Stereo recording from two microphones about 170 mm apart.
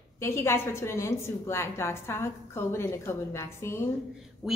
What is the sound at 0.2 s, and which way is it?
A woman's voice, 15° left (ahead or behind).